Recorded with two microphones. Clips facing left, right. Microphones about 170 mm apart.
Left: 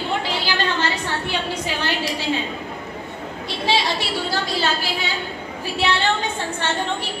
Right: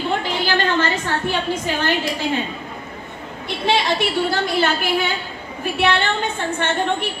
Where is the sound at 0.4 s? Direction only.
50° right (ahead or behind).